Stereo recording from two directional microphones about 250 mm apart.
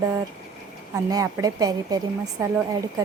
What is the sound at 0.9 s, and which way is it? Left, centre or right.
A woman's voice, centre.